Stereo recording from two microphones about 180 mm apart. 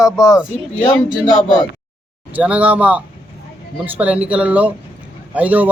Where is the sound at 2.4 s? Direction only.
5° right (ahead or behind).